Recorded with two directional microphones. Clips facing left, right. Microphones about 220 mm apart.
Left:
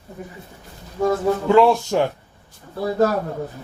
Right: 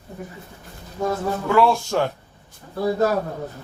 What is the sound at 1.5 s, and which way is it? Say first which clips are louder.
Speech: left 2 dB; 20° left (ahead or behind).